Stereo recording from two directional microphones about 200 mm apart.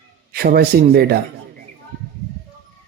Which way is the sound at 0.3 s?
50° right (ahead or behind).